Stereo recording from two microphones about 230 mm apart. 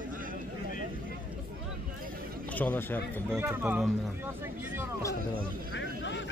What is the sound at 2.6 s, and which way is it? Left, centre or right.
Speech, centre.